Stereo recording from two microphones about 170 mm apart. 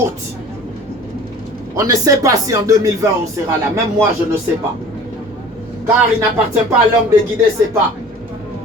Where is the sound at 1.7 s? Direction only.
20° right (ahead or behind).